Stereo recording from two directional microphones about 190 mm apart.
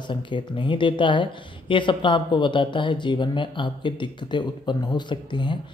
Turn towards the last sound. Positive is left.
turn(degrees=25)  # may be behind; listen again after turning